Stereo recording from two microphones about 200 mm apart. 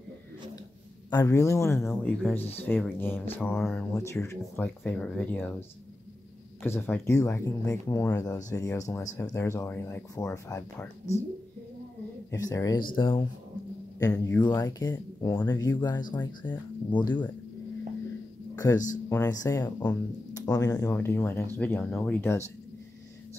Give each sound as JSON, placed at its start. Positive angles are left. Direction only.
{"t": 1.1, "sound": "speech", "side_deg": 15}
{"t": 6.6, "sound": "speech", "side_deg": 10}
{"t": 12.3, "sound": "speech", "side_deg": 15}
{"t": 14.2, "sound": "speech", "side_deg": 15}
{"t": 18.6, "sound": "speech", "side_deg": 15}